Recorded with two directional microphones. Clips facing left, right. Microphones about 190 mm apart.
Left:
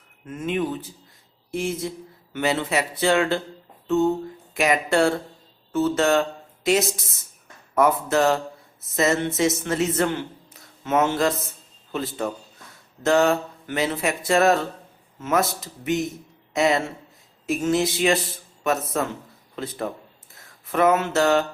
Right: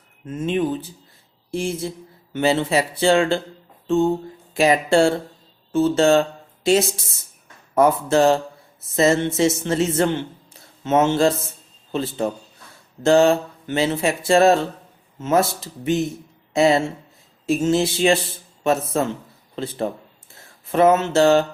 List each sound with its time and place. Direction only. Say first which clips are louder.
0.3 s a man's voice: right 4 dB; 30° right (ahead or behind)